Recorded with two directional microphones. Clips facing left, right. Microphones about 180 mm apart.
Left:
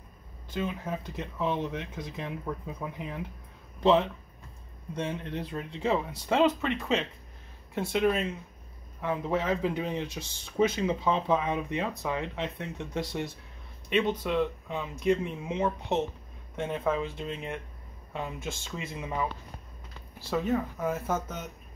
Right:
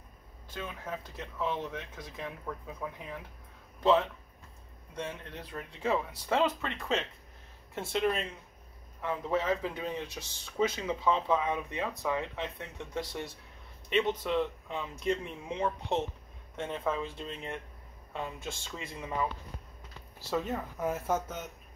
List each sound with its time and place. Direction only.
0.5 s speech: 20° left (ahead or behind)
7.9 s speech: 5° left (ahead or behind)
9.0 s speech: 15° left (ahead or behind)
20.2 s speech: centre (ahead or behind)